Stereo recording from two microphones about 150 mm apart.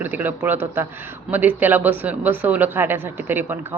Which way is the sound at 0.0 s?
10° right (ahead or behind).